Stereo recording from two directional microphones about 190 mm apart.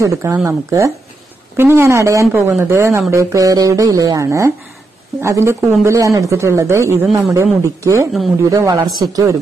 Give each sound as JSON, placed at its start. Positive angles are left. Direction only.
{"t": 0.0, "sound": "speech", "side_deg": -15}